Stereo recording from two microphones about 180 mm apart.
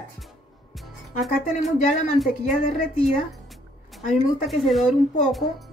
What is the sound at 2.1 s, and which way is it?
Speech, centre (ahead or behind).